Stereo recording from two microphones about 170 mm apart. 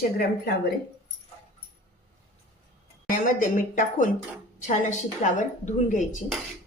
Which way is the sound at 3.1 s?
55° left (ahead or behind).